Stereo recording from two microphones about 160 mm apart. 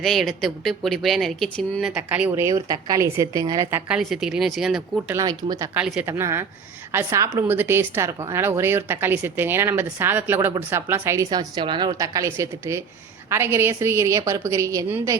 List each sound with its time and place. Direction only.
0.0 s speech: centre (ahead or behind)
5.1 s a woman's voice: 25° right (ahead or behind)
5.7 s a woman's voice: 5° right (ahead or behind)